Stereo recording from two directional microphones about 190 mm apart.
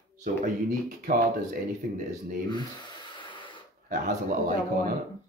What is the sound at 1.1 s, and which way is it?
Speech, 45° right (ahead or behind).